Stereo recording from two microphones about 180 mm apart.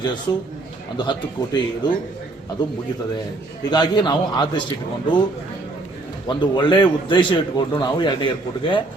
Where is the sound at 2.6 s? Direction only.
25° left (ahead or behind).